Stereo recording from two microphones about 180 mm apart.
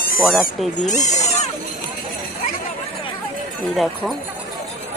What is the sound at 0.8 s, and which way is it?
Speech, 40° left (ahead or behind).